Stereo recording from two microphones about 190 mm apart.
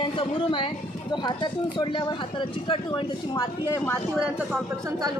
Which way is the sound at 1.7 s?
25° left (ahead or behind).